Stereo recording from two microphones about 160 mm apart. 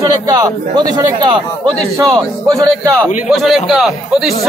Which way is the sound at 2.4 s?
20° right (ahead or behind).